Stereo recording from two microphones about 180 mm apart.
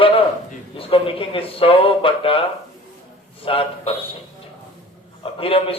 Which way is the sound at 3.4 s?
30° left (ahead or behind).